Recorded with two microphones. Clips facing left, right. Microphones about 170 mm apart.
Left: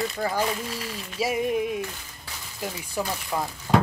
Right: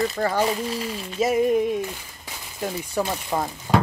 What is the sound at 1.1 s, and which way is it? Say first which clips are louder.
Music: right 5 dB; 45° right (ahead or behind).